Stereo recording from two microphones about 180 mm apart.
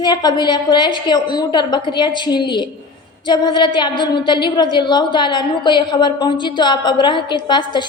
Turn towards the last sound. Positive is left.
turn(degrees=25)  # may be behind; listen again after turning